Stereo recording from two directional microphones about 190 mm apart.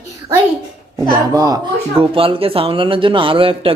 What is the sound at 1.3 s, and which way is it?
Speech, 20° right (ahead or behind).